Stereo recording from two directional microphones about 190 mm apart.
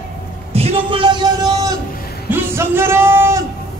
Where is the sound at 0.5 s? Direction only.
30° right (ahead or behind).